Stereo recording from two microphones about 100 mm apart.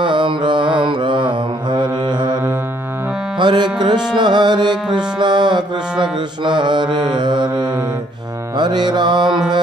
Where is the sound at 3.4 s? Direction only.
50° right (ahead or behind).